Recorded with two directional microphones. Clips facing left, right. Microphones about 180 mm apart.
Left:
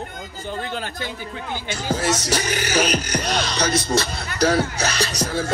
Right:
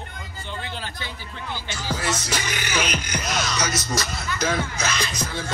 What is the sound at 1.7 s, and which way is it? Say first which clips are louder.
Speech: left 5 dB; 45° left (ahead or behind).